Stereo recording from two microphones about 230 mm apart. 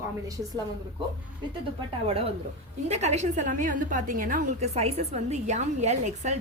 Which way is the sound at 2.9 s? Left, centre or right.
Right.